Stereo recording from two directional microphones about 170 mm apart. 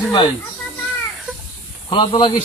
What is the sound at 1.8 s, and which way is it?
Speech, 25° left (ahead or behind).